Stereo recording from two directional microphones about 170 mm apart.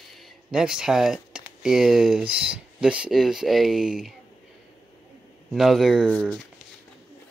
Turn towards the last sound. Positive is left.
turn(degrees=5)  # may be behind; listen again after turning